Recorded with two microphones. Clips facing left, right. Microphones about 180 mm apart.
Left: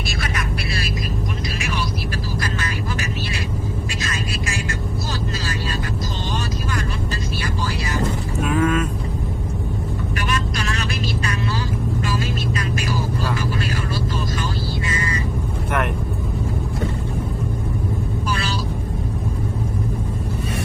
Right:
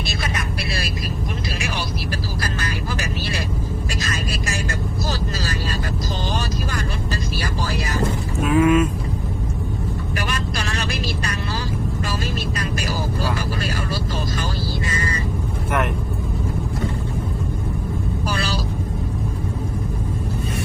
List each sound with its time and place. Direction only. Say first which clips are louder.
4.0 s vehicle: even; 40° right (ahead or behind)
8.4 s vehicle: right 4 dB; 5° right (ahead or behind)
10.2 s vehicle: left 2 dB; 35° right (ahead or behind)